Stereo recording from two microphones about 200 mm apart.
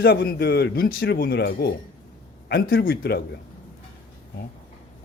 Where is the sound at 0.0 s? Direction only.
50° left (ahead or behind).